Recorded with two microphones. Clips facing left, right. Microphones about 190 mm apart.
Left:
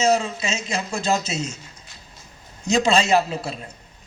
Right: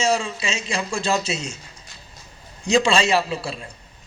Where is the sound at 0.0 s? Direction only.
45° left (ahead or behind).